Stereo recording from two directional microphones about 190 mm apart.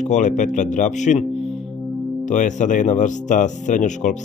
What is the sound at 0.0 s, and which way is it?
Speech, 40° left (ahead or behind).